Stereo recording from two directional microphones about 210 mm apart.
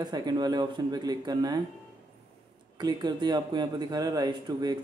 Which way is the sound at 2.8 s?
20° right (ahead or behind).